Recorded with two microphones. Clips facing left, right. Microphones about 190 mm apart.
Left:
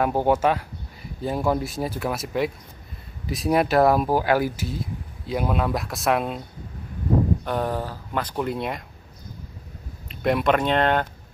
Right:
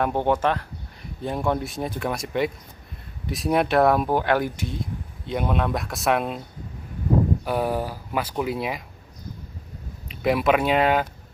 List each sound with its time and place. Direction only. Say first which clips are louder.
0.0 s speech: left 2 dB; 5° left (ahead or behind)
7.4 s speech: right 1 dB; 10° right (ahead or behind)
10.0 s speech: even; centre (ahead or behind)